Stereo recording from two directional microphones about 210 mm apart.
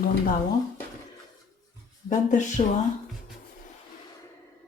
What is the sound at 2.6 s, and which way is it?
Speech, 35° left (ahead or behind).